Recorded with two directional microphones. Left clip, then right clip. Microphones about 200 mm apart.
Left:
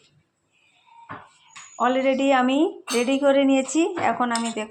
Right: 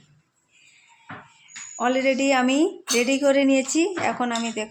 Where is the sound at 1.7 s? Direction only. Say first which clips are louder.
Left 1 dB; 5° right (ahead or behind).